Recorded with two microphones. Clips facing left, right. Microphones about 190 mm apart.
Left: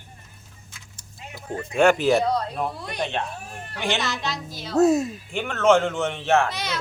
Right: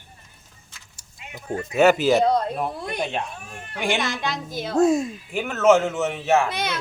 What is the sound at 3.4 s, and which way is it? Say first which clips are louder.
Speech: left 2 dB; 35° left (ahead or behind).